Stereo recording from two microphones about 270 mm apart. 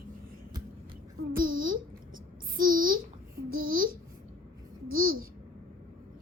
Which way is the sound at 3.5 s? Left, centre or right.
Right.